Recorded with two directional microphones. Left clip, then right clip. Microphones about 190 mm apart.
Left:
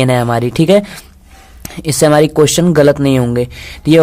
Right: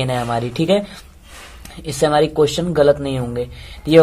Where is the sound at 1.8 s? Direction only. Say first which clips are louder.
Left 6 dB; 45° left (ahead or behind).